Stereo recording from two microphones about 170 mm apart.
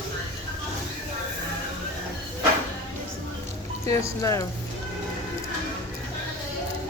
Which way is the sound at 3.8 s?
20° left (ahead or behind).